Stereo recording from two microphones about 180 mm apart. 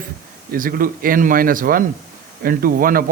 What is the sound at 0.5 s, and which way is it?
Speech, 50° right (ahead or behind).